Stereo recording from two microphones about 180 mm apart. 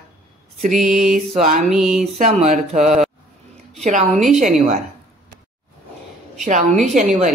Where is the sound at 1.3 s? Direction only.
40° right (ahead or behind).